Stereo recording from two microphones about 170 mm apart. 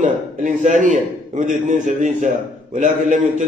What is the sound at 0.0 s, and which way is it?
A man's voice, 50° right (ahead or behind).